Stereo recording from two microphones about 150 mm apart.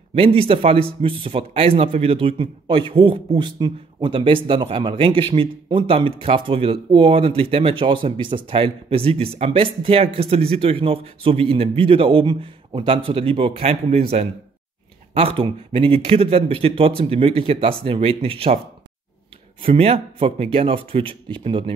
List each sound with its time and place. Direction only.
0.1 s a man's voice: 35° right (ahead or behind)
19.7 s a man's voice: 40° right (ahead or behind)